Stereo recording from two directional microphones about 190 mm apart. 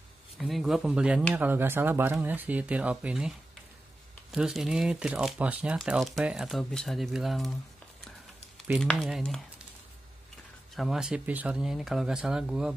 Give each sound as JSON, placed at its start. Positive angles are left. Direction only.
{"t": 0.4, "sound": "speech", "side_deg": 0}
{"t": 8.5, "sound": "speech", "side_deg": 0}
{"t": 10.8, "sound": "speech", "side_deg": -5}